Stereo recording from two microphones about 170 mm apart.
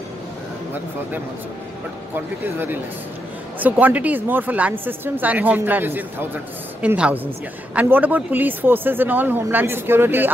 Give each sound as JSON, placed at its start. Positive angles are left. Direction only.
{"t": 2.1, "sound": "a woman's voice", "side_deg": -10}